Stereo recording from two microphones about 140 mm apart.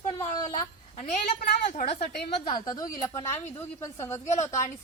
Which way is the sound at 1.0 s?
60° left (ahead or behind).